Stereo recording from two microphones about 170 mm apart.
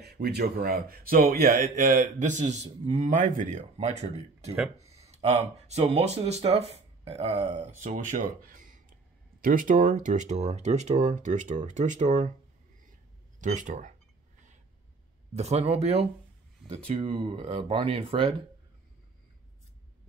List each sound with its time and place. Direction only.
0.0 s speech: 70° right (ahead or behind); by 7.4 s 35° right (ahead or behind)
7.8 s speech: 45° right (ahead or behind)
13.4 s speech: 50° right (ahead or behind)
15.3 s speech: 40° right (ahead or behind)